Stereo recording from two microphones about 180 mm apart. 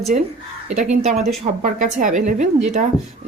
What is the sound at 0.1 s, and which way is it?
A woman's voice, 40° right (ahead or behind).